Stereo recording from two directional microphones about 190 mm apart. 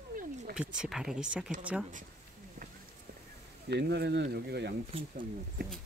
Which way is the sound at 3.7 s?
60° right (ahead or behind).